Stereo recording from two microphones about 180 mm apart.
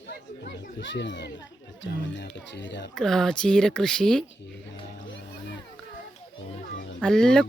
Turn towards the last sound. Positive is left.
turn(degrees=5)  # may be behind; listen again after turning